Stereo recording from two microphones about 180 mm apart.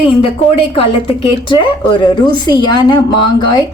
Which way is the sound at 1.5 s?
25° left (ahead or behind).